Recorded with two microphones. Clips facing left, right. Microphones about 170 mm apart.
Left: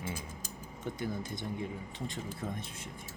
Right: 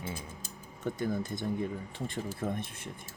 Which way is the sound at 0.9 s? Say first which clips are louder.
Right 5 dB; 50° right (ahead or behind).